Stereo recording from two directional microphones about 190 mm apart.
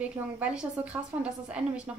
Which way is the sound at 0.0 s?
5° right (ahead or behind).